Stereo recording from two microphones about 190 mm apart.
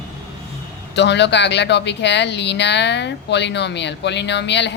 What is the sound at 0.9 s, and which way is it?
Speech, 65° left (ahead or behind).